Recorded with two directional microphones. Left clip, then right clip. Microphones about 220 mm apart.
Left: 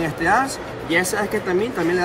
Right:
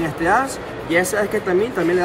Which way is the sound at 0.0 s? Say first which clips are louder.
Right 1 dB; centre (ahead or behind).